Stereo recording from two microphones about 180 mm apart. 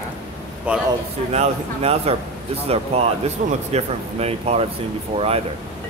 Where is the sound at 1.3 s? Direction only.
35° right (ahead or behind).